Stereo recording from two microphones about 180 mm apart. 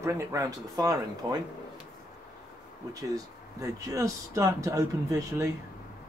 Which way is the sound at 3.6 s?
15° right (ahead or behind).